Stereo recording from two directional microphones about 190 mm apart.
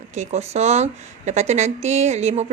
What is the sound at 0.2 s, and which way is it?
A woman's voice, 35° right (ahead or behind).